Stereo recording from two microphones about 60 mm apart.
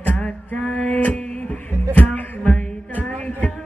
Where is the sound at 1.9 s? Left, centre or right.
Left.